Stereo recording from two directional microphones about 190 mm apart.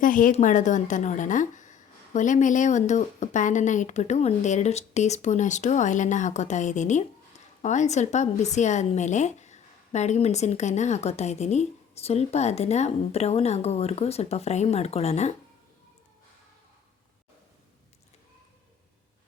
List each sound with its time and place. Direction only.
0.0 s a woman's voice: 45° left (ahead or behind)